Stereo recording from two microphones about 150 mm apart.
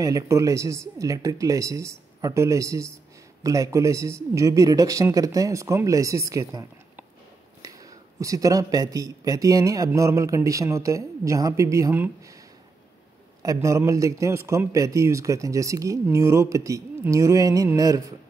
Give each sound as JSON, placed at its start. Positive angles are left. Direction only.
{"t": 0.0, "sound": "speech", "side_deg": -20}
{"t": 13.4, "sound": "speech", "side_deg": -20}